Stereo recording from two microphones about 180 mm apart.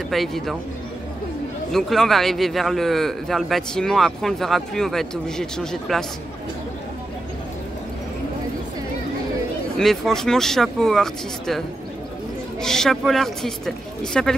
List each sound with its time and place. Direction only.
0.1 s a man's voice: centre (ahead or behind)
1.7 s a man's voice: centre (ahead or behind)
9.8 s a man's voice: centre (ahead or behind)
12.6 s a man's voice: 5° left (ahead or behind)